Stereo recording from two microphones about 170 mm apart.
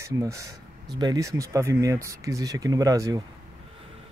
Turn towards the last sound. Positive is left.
turn(degrees=-20)  # may be behind; listen again after turning